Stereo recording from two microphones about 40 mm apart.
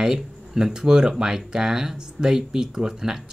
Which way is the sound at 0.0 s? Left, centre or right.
Centre.